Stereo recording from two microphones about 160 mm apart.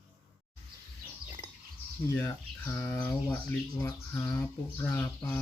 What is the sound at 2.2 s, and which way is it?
Speech, 15° left (ahead or behind).